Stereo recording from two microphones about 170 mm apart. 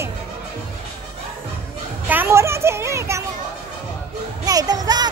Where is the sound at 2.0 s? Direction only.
15° right (ahead or behind).